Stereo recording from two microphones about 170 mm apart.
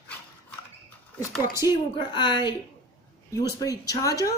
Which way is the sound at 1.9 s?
25° left (ahead or behind).